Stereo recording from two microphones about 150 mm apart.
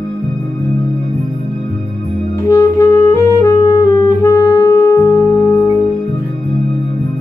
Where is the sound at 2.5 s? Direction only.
20° left (ahead or behind).